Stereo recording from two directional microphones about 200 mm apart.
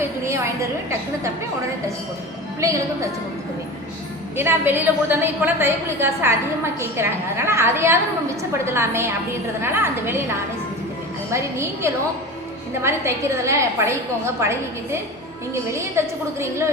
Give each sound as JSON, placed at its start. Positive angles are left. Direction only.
{"t": 0.0, "sound": "a sound", "side_deg": -15}
{"t": 2.6, "sound": "a woman's voice", "side_deg": -15}
{"t": 4.4, "sound": "a woman's voice", "side_deg": -10}